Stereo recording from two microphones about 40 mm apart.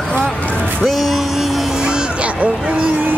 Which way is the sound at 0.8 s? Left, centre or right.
Centre.